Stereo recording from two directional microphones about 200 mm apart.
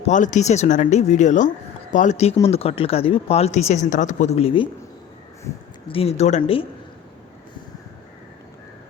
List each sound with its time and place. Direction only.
0.0 s speech: 40° left (ahead or behind)
5.9 s speech: 30° left (ahead or behind)